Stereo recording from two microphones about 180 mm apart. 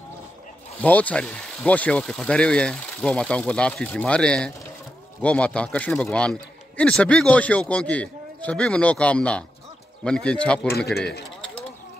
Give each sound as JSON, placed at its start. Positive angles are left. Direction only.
{"t": 0.7, "sound": "a man's voice", "side_deg": 10}
{"t": 11.0, "sound": "speech", "side_deg": 65}